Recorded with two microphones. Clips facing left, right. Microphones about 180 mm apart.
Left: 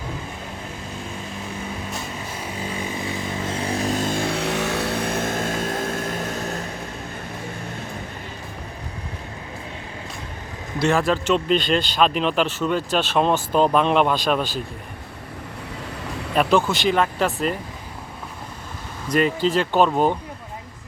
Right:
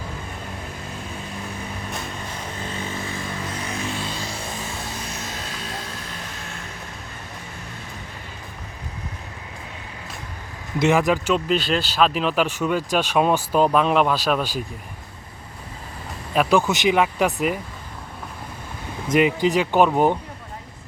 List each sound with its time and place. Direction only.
2.6 s vehicle: 15° left (ahead or behind)
3.7 s vehicle: 35° left (ahead or behind)
10.8 s speech: 15° right (ahead or behind)
16.3 s speech: 5° right (ahead or behind)
19.0 s speech: 20° right (ahead or behind)